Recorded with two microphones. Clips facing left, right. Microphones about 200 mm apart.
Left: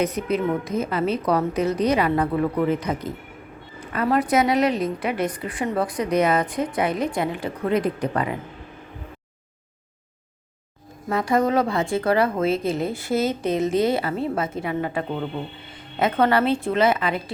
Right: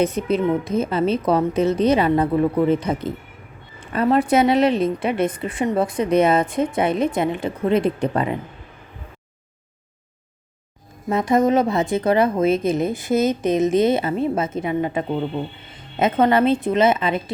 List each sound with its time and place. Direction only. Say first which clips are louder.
0.0 s a woman's voice: right 3 dB; 25° right (ahead or behind)
11.1 s a woman's voice: right 3 dB; 20° right (ahead or behind)